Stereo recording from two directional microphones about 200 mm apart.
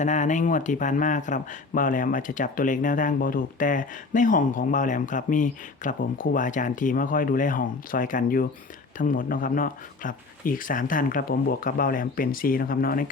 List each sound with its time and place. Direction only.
0.0 s speech: 35° left (ahead or behind)